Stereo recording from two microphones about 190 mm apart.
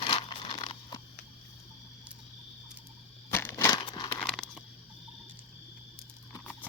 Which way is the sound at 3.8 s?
25° left (ahead or behind).